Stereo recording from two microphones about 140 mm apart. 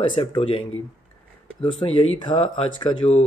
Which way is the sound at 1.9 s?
35° left (ahead or behind).